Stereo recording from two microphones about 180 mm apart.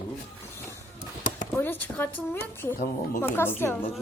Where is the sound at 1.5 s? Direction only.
10° left (ahead or behind).